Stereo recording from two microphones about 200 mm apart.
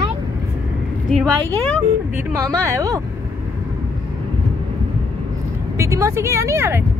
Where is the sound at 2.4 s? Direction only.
15° right (ahead or behind).